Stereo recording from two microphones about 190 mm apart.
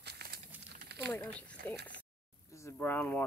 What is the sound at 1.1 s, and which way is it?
Speech, 10° left (ahead or behind).